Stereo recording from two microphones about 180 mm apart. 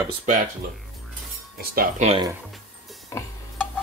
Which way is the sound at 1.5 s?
55° right (ahead or behind).